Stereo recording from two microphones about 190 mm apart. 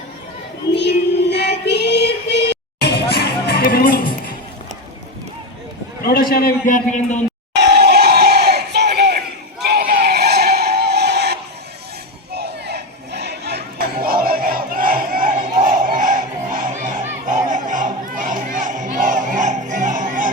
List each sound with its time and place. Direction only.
0.8 s child singing: 65° left (ahead or behind)
6.0 s a man's voice: 50° left (ahead or behind)
7.5 s a sound: 60° right (ahead or behind)
9.6 s vehicle: 55° right (ahead or behind)
12.3 s chatter: 60° right (ahead or behind)
15.6 s music: 45° right (ahead or behind)